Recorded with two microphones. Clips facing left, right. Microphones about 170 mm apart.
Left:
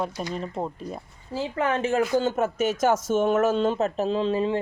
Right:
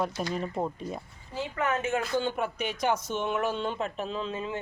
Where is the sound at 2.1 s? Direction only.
40° left (ahead or behind).